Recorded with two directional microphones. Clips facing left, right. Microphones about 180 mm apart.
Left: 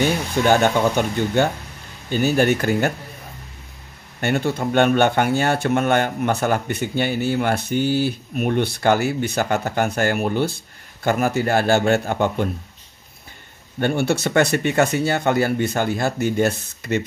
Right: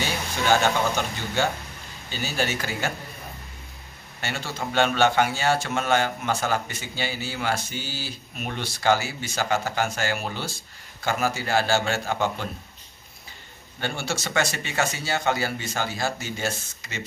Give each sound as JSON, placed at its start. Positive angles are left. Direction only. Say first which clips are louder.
{"t": 0.0, "sound": "speech", "louder": "left 8 dB", "side_deg": 55}
{"t": 4.2, "sound": "speech", "louder": "left 10 dB", "side_deg": 55}
{"t": 13.7, "sound": "speech", "louder": "left 10 dB", "side_deg": 55}